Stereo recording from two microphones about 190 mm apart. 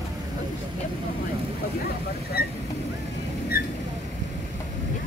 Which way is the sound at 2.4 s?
50° left (ahead or behind).